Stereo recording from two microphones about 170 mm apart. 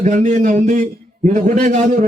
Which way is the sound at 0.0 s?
45° right (ahead or behind).